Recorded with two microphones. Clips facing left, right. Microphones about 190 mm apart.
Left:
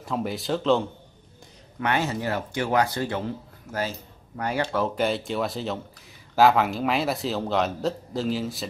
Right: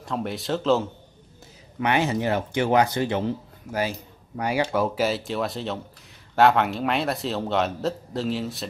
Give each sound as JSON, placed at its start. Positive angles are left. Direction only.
{"t": 0.0, "sound": "a man's voice", "side_deg": 0}
{"t": 1.8, "sound": "a man's voice", "side_deg": -15}